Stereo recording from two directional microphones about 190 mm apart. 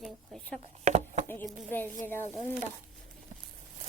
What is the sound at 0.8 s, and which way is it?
Speech, 35° right (ahead or behind).